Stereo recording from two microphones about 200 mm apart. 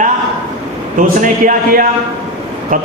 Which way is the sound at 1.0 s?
40° right (ahead or behind).